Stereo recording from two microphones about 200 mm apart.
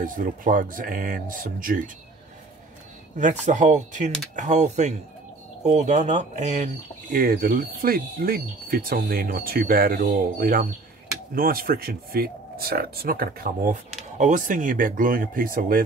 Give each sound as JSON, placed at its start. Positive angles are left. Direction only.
{"t": 0.0, "sound": "speech", "side_deg": -40}
{"t": 3.2, "sound": "speech", "side_deg": -40}